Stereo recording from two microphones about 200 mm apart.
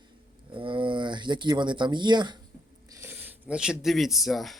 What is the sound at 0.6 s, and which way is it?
Speech, 25° right (ahead or behind).